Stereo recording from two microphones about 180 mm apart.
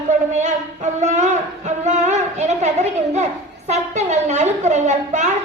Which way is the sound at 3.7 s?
40° right (ahead or behind).